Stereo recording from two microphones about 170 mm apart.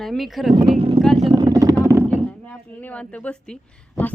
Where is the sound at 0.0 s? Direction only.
Centre (ahead or behind).